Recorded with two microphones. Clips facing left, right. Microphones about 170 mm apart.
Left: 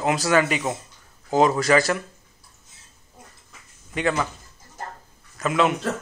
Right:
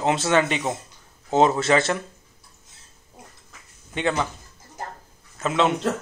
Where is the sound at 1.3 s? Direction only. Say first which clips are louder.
Even; 25° right (ahead or behind).